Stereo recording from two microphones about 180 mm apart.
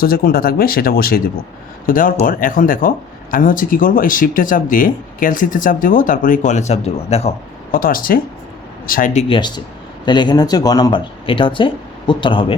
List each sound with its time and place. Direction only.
0.0 s speech: 55° left (ahead or behind); by 7.3 s 35° left (ahead or behind)
7.7 s speech: 50° left (ahead or behind)
10.1 s speech: 25° left (ahead or behind)